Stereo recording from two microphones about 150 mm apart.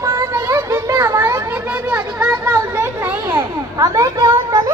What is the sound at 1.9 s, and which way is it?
Children playing, 15° right (ahead or behind).